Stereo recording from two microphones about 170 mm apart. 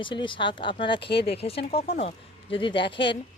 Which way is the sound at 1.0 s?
80° left.